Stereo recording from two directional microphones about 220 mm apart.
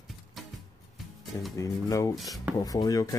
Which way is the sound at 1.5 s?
15° left (ahead or behind).